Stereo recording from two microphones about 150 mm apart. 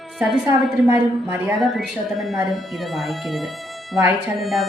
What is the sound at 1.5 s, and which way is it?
Speech, centre (ahead or behind).